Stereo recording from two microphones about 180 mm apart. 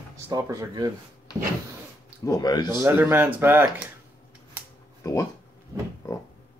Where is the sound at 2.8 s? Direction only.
10° right (ahead or behind).